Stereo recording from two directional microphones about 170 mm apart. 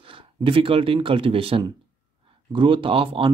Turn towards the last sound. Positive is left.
turn(degrees=-30)  # may be behind; listen again after turning